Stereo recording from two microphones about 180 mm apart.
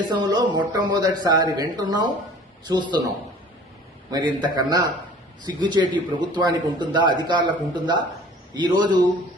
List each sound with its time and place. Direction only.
0.1 s a man's voice: 25° right (ahead or behind)
4.1 s a man's voice: 25° right (ahead or behind)